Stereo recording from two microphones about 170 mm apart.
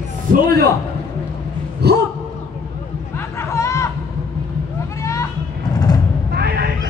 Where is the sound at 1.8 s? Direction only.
70° right (ahead or behind).